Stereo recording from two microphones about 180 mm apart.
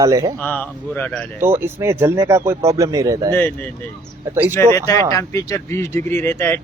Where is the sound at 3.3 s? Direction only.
10° left (ahead or behind).